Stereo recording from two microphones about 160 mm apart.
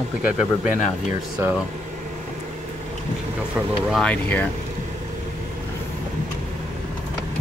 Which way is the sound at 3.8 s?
5° left (ahead or behind).